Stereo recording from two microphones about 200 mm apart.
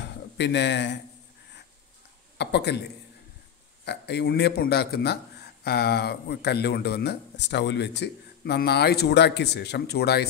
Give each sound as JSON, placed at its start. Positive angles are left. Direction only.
{"t": 0.0, "sound": "a sound", "side_deg": 60}
{"t": 2.3, "sound": "a man's voice", "side_deg": 55}
{"t": 3.8, "sound": "a man's voice", "side_deg": 60}